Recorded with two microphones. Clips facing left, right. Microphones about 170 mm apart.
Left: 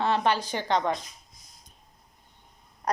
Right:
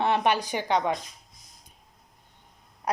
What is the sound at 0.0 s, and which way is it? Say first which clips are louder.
Speech: right 1 dB; 20° right (ahead or behind).